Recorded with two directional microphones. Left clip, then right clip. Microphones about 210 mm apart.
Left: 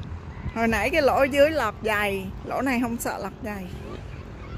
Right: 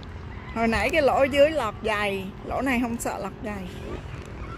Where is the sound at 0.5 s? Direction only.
15° left (ahead or behind).